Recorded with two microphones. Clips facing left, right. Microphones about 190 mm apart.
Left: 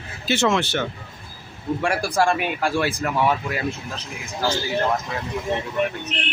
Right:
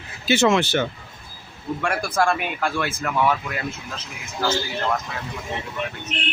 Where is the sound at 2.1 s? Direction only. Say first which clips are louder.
Even; 15° left (ahead or behind).